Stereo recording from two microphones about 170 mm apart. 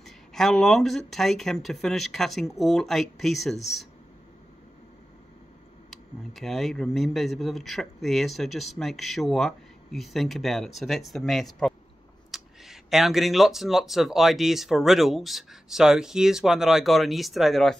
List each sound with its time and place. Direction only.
0.0 s speech: centre (ahead or behind)
5.9 s speech: centre (ahead or behind)